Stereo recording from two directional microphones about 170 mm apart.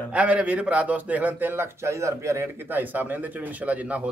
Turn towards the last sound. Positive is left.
turn(degrees=-10)  # may be behind; listen again after turning